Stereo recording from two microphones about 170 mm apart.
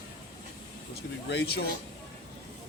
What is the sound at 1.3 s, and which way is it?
Speech, 70° left (ahead or behind).